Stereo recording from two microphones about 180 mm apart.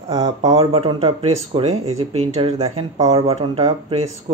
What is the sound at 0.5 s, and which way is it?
Speech, 30° right (ahead or behind).